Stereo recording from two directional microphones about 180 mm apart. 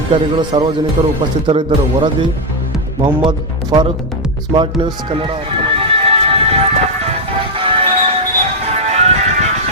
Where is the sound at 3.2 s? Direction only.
25° right (ahead or behind).